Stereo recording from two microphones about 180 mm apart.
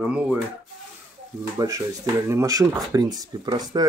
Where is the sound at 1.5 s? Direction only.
20° right (ahead or behind).